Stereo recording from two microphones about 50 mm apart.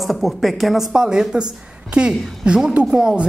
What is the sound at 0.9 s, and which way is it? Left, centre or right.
A woman's voice, centre.